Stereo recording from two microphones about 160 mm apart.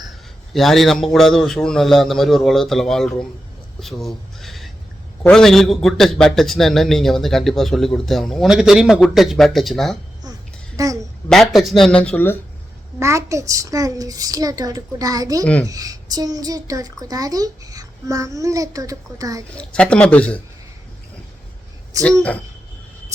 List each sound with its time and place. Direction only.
0.5 s a man's voice: centre (ahead or behind)
3.8 s a sound: centre (ahead or behind)
5.2 s a man's voice: 5° left (ahead or behind)
10.8 s a child's voice: 20° right (ahead or behind)
11.3 s a man's voice: centre (ahead or behind)
13.0 s a child's voice: 20° right (ahead or behind)
19.5 s speech: 5° left (ahead or behind)
21.9 s a child's voice: 20° right (ahead or behind)